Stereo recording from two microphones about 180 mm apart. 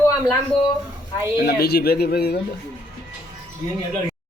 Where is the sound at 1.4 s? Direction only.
60° left (ahead or behind).